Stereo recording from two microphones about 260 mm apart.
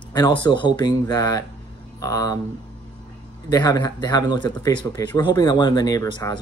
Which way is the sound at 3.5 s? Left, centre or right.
Centre.